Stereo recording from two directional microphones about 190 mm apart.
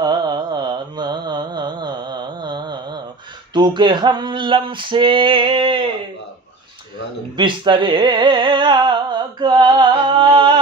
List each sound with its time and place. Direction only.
0.0 s carnatic music: 20° right (ahead or behind)
3.5 s male singing: 25° right (ahead or behind)
7.3 s speech: 25° right (ahead or behind)